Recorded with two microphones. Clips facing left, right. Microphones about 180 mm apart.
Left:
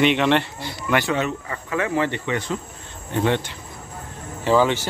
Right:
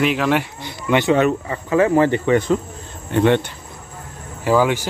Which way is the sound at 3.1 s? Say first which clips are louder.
Right 6 dB; 65° right (ahead or behind).